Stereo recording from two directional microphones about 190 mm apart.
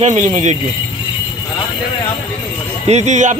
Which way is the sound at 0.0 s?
40° right (ahead or behind).